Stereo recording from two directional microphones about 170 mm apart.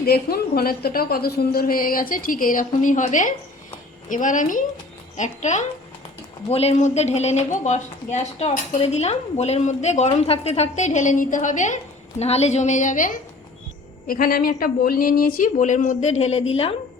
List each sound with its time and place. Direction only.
0.0 s a woman's voice: 65° left (ahead or behind); by 16.7 s 35° left (ahead or behind)